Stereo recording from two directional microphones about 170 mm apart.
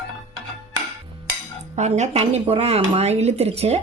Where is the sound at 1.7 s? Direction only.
45° right (ahead or behind).